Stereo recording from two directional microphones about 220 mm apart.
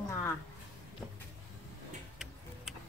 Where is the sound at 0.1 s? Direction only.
10° left (ahead or behind).